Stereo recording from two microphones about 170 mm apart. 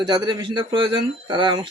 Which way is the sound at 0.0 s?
25° right (ahead or behind).